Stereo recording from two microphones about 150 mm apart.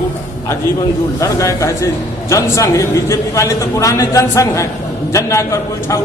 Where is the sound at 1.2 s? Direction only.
20° left (ahead or behind).